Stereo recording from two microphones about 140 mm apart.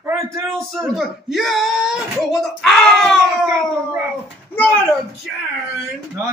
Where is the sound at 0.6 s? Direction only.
5° left (ahead or behind).